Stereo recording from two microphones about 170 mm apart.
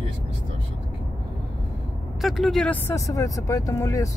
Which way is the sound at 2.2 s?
Centre (ahead or behind).